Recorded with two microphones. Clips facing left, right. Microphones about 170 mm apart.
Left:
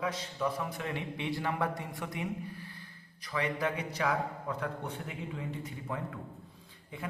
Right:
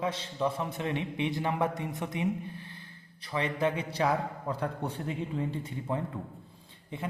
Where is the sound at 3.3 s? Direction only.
25° right (ahead or behind).